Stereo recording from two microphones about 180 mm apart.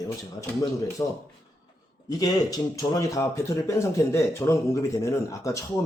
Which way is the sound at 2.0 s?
20° left (ahead or behind).